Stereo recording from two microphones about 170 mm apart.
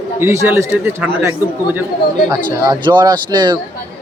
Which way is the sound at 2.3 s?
25° right (ahead or behind).